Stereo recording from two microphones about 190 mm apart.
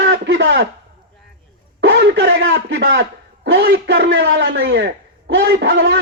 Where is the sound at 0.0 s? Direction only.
70° right (ahead or behind).